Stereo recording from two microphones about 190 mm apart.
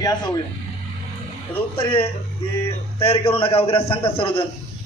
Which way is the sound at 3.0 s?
30° left (ahead or behind).